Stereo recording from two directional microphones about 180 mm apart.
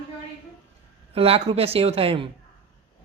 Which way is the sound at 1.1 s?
30° right (ahead or behind).